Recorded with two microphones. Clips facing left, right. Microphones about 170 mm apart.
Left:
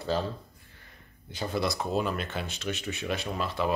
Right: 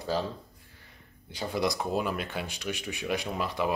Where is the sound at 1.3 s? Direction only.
15° right (ahead or behind).